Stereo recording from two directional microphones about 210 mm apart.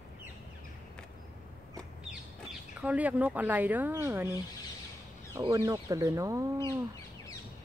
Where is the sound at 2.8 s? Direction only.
5° right (ahead or behind).